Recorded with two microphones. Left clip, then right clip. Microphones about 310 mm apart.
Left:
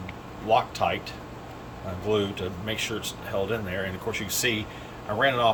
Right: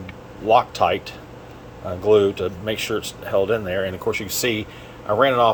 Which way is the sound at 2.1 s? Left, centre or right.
Centre.